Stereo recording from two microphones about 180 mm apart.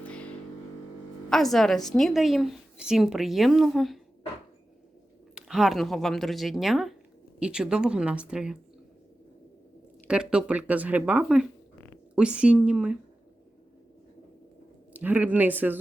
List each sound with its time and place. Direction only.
0.0 s a sound: 5° left (ahead or behind)
1.3 s a woman's voice: centre (ahead or behind)
5.3 s a woman's voice: 5° right (ahead or behind)
10.1 s a woman's voice: 5° right (ahead or behind)
14.9 s speech: 10° right (ahead or behind)